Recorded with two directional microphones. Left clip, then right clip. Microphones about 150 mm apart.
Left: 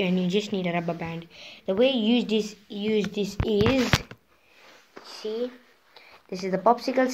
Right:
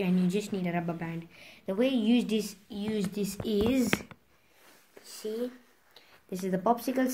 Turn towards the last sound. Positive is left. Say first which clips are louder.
# left 6 dB
turn(degrees=-55)  # may be behind; listen again after turning